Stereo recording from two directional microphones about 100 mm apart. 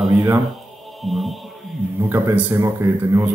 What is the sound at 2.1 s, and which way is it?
Speech, 20° right (ahead or behind).